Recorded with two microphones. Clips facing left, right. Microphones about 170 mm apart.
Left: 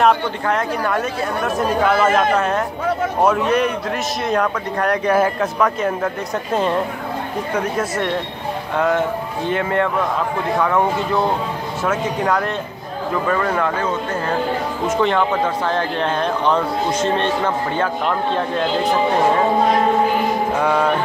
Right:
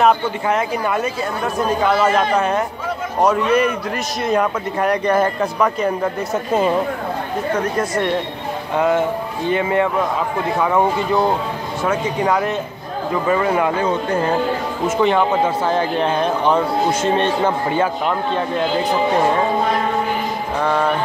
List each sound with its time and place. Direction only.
0.0 s speech: 5° right (ahead or behind)
7.5 s speech: 5° left (ahead or behind)
20.6 s music: 5° left (ahead or behind)